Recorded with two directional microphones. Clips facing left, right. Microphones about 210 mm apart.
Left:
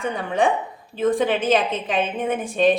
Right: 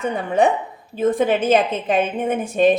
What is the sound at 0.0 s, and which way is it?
A woman's voice, 40° right (ahead or behind).